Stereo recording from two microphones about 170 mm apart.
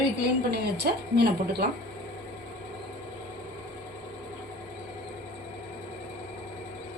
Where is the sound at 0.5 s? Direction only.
70° right (ahead or behind).